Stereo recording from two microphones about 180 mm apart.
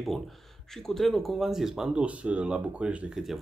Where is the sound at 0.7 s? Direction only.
Centre (ahead or behind).